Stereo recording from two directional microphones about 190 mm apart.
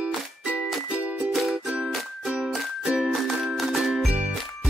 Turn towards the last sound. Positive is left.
turn(degrees=-5)  # may be behind; listen again after turning